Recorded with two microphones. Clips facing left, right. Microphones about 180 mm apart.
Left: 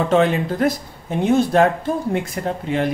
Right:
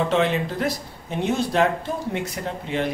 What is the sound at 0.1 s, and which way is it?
Speech, 50° left (ahead or behind).